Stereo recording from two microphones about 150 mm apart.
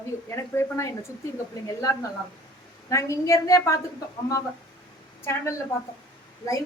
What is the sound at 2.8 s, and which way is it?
Speech, 20° left (ahead or behind).